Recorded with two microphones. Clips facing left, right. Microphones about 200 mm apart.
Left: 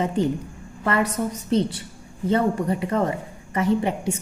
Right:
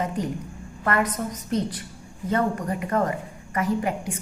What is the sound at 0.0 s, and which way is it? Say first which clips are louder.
A woman's voice: left 5 dB; 30° left (ahead or behind).